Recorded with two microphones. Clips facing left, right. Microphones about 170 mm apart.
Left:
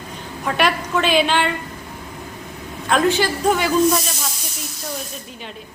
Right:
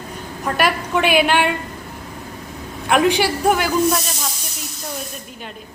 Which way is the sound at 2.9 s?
15° right (ahead or behind).